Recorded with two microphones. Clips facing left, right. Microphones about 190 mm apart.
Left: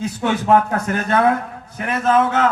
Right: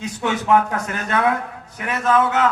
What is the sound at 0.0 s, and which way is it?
A man's voice, 35° left (ahead or behind).